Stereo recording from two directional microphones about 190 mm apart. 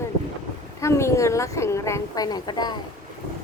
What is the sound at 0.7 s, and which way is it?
A woman's voice, 15° left (ahead or behind).